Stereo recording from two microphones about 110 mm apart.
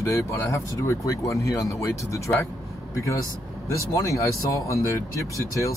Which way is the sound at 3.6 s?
30° left (ahead or behind).